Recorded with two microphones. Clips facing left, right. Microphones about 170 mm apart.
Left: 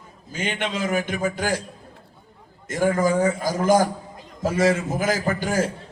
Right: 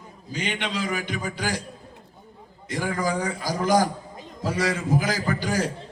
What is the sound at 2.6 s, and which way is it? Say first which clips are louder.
A man's voice: left 6 dB; 45° left (ahead or behind).